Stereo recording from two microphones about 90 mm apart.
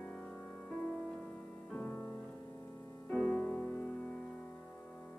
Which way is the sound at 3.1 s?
5° left (ahead or behind).